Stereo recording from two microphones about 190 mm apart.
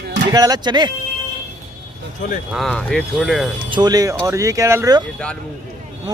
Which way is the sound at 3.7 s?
20° right (ahead or behind).